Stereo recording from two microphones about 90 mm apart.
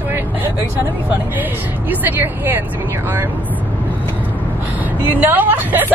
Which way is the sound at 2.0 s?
25° right (ahead or behind).